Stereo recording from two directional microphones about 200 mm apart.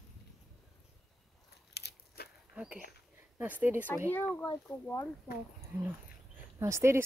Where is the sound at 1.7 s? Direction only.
55° left (ahead or behind).